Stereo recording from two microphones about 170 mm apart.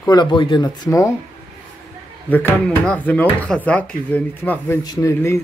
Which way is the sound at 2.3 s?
10° left (ahead or behind).